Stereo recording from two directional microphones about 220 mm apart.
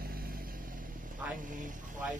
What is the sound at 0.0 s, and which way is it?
Vehicle, 45° right (ahead or behind).